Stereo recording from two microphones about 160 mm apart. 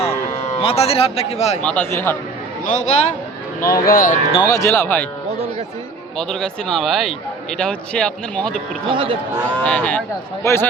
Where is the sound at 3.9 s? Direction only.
60° left (ahead or behind).